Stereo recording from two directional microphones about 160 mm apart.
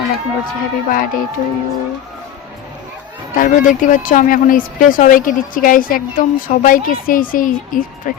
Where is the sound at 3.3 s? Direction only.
55° left (ahead or behind).